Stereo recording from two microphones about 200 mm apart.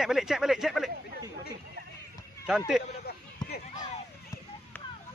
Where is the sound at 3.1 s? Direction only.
50° left (ahead or behind).